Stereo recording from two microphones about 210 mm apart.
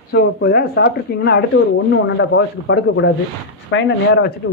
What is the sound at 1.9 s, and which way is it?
Speech, 60° left (ahead or behind).